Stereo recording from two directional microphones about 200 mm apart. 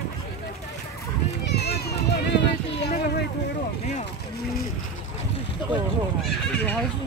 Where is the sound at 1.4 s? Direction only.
55° left (ahead or behind).